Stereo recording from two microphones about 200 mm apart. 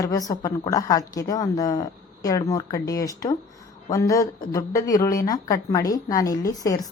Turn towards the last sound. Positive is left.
turn(degrees=20)  # may be behind; listen again after turning